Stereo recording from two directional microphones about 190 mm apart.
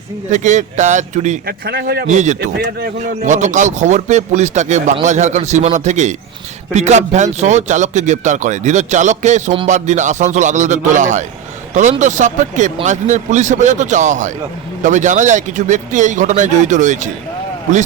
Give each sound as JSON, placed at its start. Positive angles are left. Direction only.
{"t": 0.3, "sound": "speech", "side_deg": -40}
{"t": 1.6, "sound": "a man's voice", "side_deg": -55}
{"t": 2.1, "sound": "speech", "side_deg": -40}